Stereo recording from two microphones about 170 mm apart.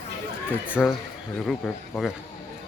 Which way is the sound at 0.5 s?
10° right (ahead or behind).